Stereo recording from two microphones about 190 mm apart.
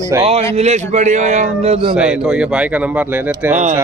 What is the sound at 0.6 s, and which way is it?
A man's voice, 35° right (ahead or behind).